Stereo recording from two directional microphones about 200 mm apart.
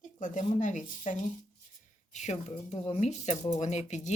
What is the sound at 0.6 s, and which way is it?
Speech, 40° left (ahead or behind).